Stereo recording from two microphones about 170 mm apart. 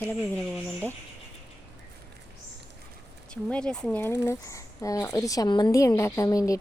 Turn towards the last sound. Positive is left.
turn(degrees=20)  # may be behind; listen again after turning